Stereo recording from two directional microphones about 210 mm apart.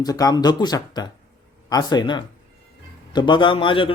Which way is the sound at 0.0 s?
20° left (ahead or behind).